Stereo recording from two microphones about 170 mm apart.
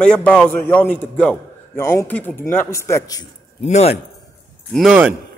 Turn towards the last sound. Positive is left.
turn(degrees=-5)  # may be behind; listen again after turning